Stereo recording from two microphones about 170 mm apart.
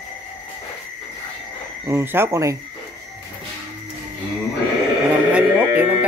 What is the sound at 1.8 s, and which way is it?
Speech, 15° right (ahead or behind).